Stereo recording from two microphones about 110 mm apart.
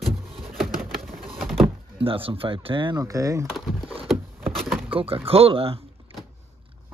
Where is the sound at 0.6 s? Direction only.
Centre (ahead or behind).